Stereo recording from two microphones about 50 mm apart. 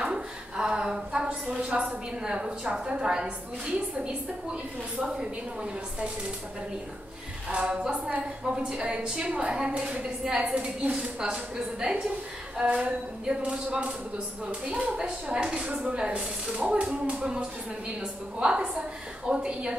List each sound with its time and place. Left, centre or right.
0.0 s a woman's voice: centre
7.4 s speech: right
17.2 s a woman's voice: centre